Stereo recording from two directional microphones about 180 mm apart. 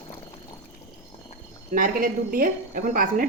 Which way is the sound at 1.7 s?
50° right (ahead or behind).